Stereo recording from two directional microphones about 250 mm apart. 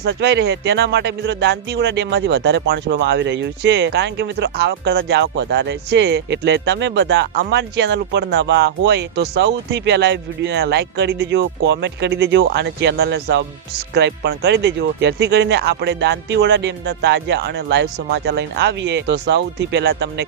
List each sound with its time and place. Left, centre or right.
0.0 s speech: right